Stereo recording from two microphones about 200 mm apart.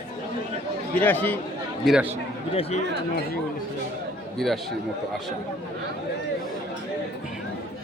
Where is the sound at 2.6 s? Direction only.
30° left (ahead or behind).